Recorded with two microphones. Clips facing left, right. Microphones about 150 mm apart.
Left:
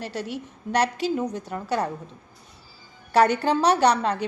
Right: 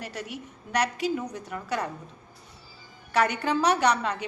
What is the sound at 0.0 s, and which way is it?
A woman's voice, 30° left (ahead or behind).